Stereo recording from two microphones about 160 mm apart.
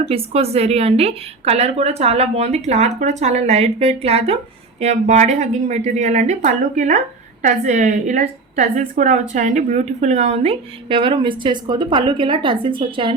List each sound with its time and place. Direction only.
0.1 s a woman's voice: 40° right (ahead or behind)